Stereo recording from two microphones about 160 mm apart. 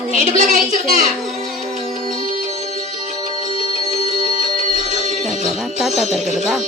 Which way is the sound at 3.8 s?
45° right (ahead or behind).